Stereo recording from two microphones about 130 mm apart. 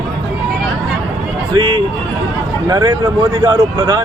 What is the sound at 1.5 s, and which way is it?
Speech, 35° right (ahead or behind).